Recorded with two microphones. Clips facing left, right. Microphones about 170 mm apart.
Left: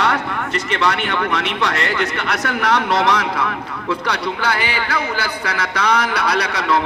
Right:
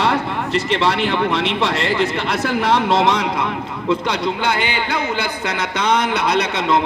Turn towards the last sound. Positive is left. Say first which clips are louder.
# right 1 dB
turn(degrees=-25)  # may be behind; listen again after turning